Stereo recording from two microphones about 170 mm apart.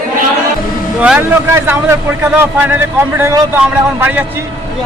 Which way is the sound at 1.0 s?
10° right (ahead or behind).